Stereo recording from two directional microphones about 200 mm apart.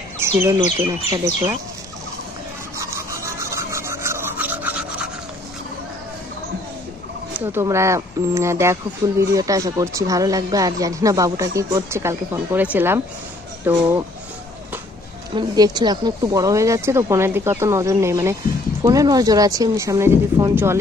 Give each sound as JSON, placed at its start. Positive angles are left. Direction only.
{"t": 0.2, "sound": "speech", "side_deg": -10}
{"t": 2.8, "sound": "rub", "side_deg": -15}
{"t": 7.3, "sound": "speech", "side_deg": -15}
{"t": 15.3, "sound": "speech", "side_deg": -20}